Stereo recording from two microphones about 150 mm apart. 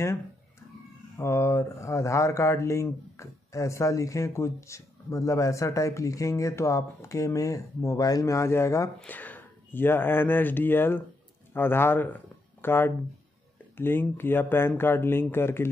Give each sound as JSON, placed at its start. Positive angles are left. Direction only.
{"t": 1.1, "sound": "speech", "side_deg": 20}